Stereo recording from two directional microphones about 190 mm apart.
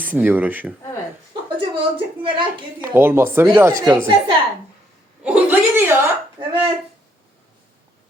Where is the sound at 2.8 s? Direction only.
10° right (ahead or behind).